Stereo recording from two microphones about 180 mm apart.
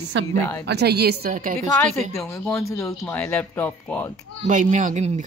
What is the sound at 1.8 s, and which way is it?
Speech, 15° left (ahead or behind).